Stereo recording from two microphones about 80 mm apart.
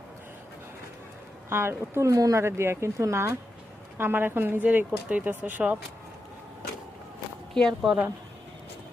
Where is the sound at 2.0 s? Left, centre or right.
Right.